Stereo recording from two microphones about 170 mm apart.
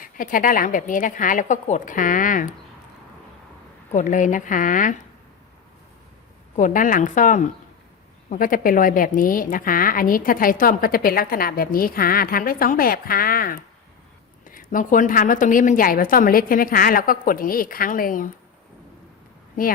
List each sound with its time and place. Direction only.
0.0 s a woman's voice: 55° left (ahead or behind)
3.9 s a woman's voice: 50° left (ahead or behind)
6.6 s a woman's voice: 50° left (ahead or behind)